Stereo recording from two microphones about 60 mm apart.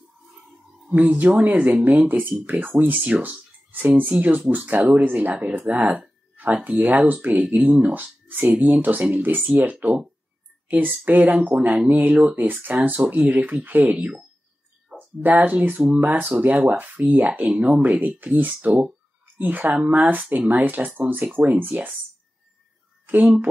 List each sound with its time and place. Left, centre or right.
0.9 s speech: right